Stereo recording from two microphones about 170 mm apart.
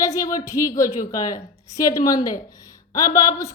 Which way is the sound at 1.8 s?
20° left (ahead or behind).